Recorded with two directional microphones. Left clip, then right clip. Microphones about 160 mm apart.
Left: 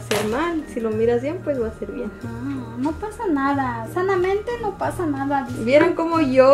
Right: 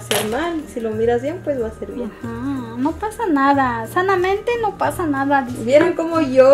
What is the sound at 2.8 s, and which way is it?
A woman's voice, 20° right (ahead or behind).